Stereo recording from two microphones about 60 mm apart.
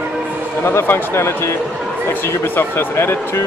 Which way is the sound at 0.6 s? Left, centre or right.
Left.